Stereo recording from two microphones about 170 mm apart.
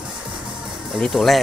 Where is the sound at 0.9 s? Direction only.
Centre (ahead or behind).